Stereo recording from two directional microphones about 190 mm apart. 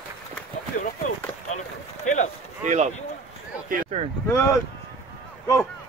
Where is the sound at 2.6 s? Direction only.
35° right (ahead or behind).